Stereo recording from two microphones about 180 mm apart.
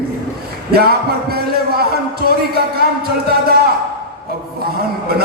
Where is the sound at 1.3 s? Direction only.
60° right (ahead or behind).